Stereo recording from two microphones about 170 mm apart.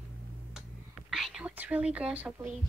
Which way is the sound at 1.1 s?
5° right (ahead or behind).